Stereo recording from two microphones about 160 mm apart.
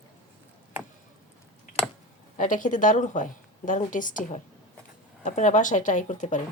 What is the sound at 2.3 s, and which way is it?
A woman's voice, 50° left (ahead or behind).